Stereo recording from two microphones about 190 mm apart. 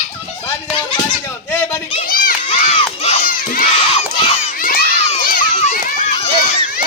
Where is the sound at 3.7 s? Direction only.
30° left (ahead or behind).